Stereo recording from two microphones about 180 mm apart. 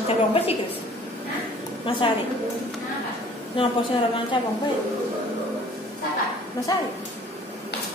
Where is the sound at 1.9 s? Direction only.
30° left (ahead or behind).